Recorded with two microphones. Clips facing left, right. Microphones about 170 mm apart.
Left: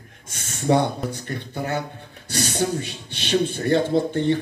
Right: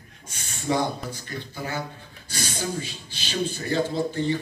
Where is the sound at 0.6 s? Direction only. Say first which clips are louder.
Left 5 dB; 65° left (ahead or behind).